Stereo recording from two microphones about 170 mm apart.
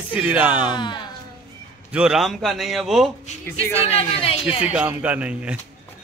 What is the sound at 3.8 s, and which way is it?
Speech, 35° left (ahead or behind).